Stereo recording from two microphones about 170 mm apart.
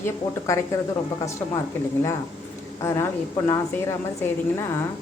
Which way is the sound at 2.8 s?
15° left (ahead or behind).